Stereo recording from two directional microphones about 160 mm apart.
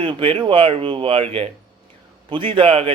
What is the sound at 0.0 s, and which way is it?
Speech, 30° right (ahead or behind).